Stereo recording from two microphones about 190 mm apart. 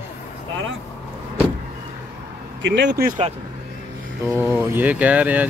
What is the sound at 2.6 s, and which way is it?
Speech, 65° right (ahead or behind).